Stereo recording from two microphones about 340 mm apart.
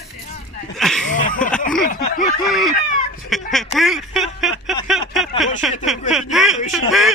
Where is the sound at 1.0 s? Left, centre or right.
Left.